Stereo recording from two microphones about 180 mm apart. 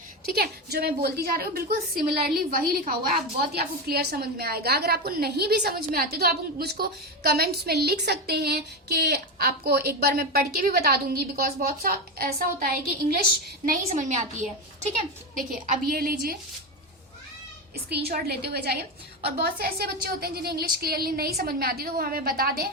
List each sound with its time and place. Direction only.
0.3 s a woman's voice: 60° right (ahead or behind)
13.7 s a woman's voice: 45° right (ahead or behind)
15.6 s a woman's voice: 50° right (ahead or behind)
17.8 s a woman's voice: 60° right (ahead or behind)